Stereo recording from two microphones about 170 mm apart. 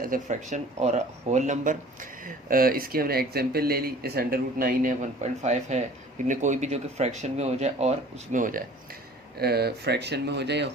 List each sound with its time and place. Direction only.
0.0 s speech: 50° right (ahead or behind)
9.4 s speech: 70° right (ahead or behind); by 10.7 s 85° right